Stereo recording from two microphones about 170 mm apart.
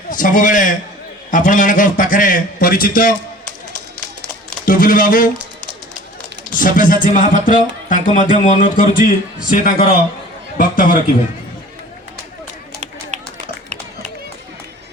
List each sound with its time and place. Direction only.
0.1 s speech: 50° left (ahead or behind)
4.6 s speech: 55° left (ahead or behind)
6.5 s speech: 50° left (ahead or behind)